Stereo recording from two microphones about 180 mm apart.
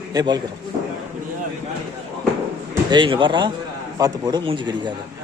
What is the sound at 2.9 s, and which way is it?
A man's voice, 25° right (ahead or behind).